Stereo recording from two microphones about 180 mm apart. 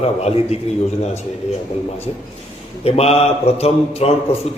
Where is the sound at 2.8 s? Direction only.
35° left (ahead or behind).